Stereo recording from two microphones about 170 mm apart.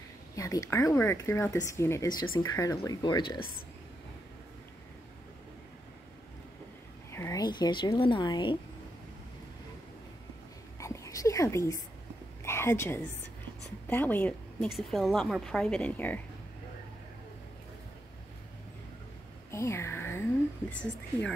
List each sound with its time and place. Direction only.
0.4 s speech: 20° left (ahead or behind)
7.1 s speech: 15° left (ahead or behind)
10.8 s a woman's voice: 20° left (ahead or behind)
19.5 s a sound: 15° left (ahead or behind)